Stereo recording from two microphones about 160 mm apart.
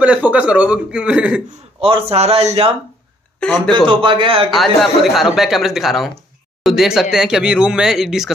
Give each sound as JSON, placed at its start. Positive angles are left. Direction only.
{"t": 0.0, "sound": "a man's voice", "side_deg": -10}
{"t": 1.8, "sound": "speech", "side_deg": -40}
{"t": 3.7, "sound": "speech", "side_deg": -30}
{"t": 4.5, "sound": "speech", "side_deg": 0}